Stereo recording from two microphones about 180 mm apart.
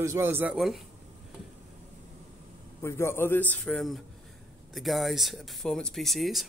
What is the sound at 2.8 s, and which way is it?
A man's voice, 15° left (ahead or behind).